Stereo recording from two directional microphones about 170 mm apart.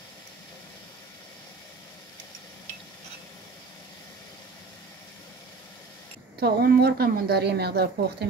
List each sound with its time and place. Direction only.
6.4 s a woman's voice: 65° right (ahead or behind)